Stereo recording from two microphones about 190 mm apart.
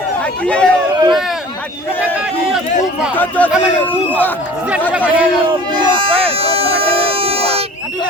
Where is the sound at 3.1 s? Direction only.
10° left (ahead or behind).